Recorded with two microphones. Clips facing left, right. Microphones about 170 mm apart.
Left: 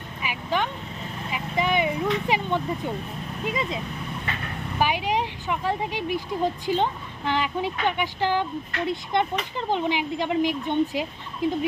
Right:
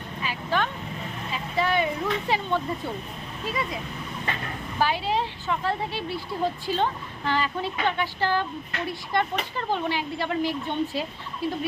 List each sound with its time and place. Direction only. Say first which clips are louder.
0.2 s vehicle: even; 15° left (ahead or behind)
1.3 s a sound: left 1 dB; 15° left (ahead or behind)
3.4 s speech: left 2 dB; 20° left (ahead or behind)
4.8 s speech: left 1 dB; 15° left (ahead or behind)